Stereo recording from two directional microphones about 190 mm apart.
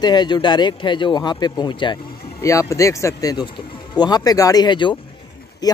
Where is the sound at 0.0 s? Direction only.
25° left (ahead or behind).